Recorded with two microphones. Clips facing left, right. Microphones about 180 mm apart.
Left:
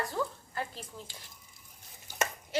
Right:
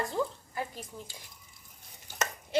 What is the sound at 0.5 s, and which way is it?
Speech, 15° right (ahead or behind).